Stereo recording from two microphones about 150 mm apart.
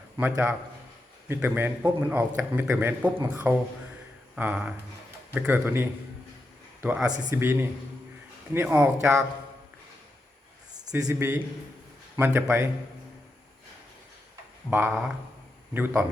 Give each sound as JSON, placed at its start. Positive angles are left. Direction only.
{"t": 0.2, "sound": "a man's voice", "side_deg": -10}
{"t": 11.0, "sound": "a man's voice", "side_deg": -15}
{"t": 14.7, "sound": "a man's voice", "side_deg": -15}